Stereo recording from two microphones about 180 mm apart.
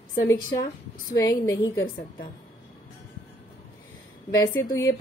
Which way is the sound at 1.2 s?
20° left (ahead or behind).